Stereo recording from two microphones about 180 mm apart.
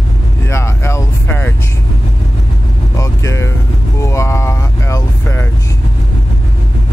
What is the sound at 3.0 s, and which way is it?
Music, 15° left (ahead or behind).